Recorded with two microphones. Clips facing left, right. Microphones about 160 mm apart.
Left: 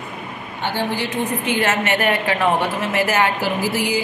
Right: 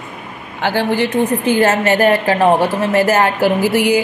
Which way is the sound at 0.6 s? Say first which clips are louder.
Right 7 dB; 90° right.